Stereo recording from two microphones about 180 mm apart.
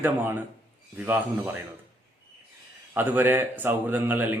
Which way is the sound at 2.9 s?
10° right (ahead or behind).